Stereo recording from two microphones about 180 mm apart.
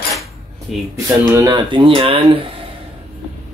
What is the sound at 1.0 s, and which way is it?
Speech, 15° right (ahead or behind).